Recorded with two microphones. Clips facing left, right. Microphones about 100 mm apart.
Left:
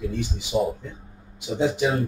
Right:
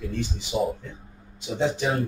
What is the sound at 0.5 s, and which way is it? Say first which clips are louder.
Speech: left 2 dB; 20° left (ahead or behind).